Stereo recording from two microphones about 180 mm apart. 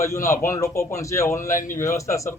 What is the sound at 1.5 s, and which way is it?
Speech, 45° left (ahead or behind).